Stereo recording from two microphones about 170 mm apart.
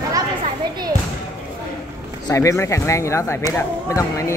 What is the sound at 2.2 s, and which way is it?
Speech, 20° left (ahead or behind).